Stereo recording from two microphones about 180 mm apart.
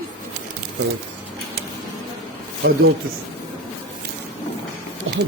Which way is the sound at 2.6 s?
90° right.